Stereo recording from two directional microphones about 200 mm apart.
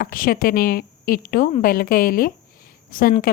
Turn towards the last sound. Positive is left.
turn(degrees=45)  # may be behind; listen again after turning